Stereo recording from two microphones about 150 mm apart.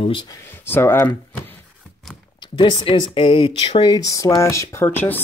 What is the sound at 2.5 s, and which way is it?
Speech, 35° left (ahead or behind).